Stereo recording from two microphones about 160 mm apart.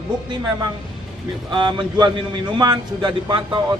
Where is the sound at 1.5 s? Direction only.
30° right (ahead or behind).